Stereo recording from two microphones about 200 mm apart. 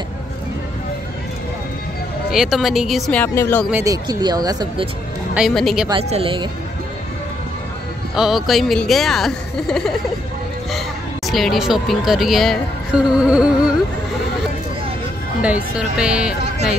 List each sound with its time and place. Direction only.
2.3 s speech: centre (ahead or behind)
3.7 s speech: 15° right (ahead or behind)
5.3 s speech: centre (ahead or behind)
5.9 s speech: 30° right (ahead or behind)
8.2 s speech: centre (ahead or behind)
11.2 s speech: centre (ahead or behind)
15.4 s speech: 5° right (ahead or behind)